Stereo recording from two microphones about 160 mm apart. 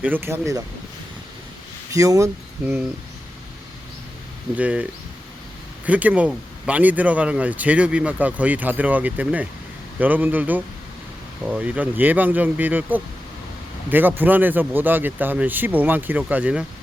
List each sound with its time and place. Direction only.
0.0 s speech: 15° right (ahead or behind)
1.9 s speech: 20° right (ahead or behind)
4.5 s speech: 10° right (ahead or behind)